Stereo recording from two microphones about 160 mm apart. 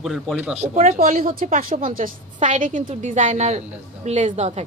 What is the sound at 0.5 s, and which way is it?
Speech, 45° right (ahead or behind).